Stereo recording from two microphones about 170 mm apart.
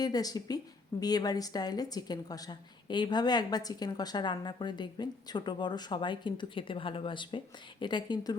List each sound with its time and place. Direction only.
0.0 s a woman's voice: 20° left (ahead or behind)